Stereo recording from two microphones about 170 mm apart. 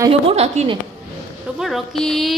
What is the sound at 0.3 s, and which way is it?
Speech, 35° right (ahead or behind).